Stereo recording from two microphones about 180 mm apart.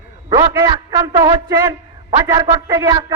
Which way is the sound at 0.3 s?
20° right (ahead or behind).